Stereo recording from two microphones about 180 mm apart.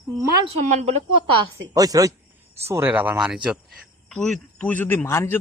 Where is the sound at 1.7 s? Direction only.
20° right (ahead or behind).